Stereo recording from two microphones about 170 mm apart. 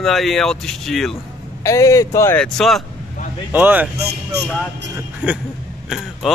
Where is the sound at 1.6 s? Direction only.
20° left (ahead or behind).